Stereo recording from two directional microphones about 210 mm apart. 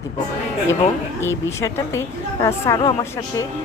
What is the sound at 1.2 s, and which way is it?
Speech, 10° left (ahead or behind).